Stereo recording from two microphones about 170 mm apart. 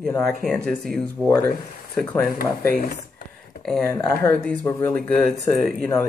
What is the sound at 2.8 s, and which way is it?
Computer keyboard, 55° left (ahead or behind).